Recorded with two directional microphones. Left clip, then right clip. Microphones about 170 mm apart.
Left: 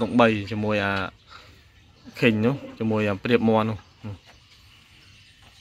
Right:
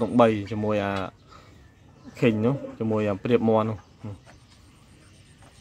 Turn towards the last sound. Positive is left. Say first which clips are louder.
# left 1 dB
turn(degrees=0)  # may be behind; listen again after turning